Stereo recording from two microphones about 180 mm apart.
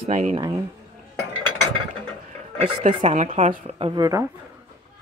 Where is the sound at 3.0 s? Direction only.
40° right (ahead or behind); by 4.3 s 20° right (ahead or behind).